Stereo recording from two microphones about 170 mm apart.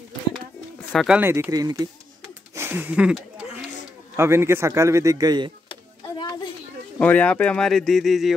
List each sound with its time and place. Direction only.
0.9 s a man's voice: 5° right (ahead or behind); by 1.9 s 20° right (ahead or behind)
2.5 s a sound: 15° right (ahead or behind)
4.2 s a man's voice: 15° right (ahead or behind)
6.0 s children playing: 25° left (ahead or behind)
7.0 s speech: 10° left (ahead or behind)